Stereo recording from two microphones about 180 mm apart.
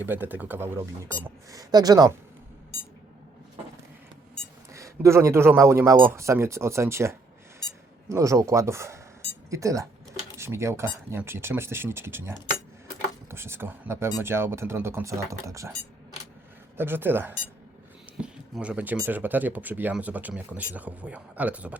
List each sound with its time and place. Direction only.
0.0 s speech: 10° right (ahead or behind)
4.7 s speech: 15° right (ahead or behind)
13.3 s speech: 15° right (ahead or behind)
16.7 s speech: 10° right (ahead or behind)